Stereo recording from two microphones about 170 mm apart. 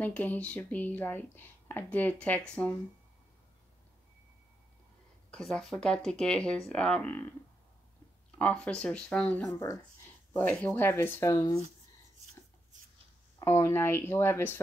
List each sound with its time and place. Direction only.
0.0 s speech: 10° left (ahead or behind)
5.3 s speech: centre (ahead or behind)
8.4 s speech: 5° left (ahead or behind)
9.4 s speech: 15° left (ahead or behind)
13.4 s speech: 15° left (ahead or behind)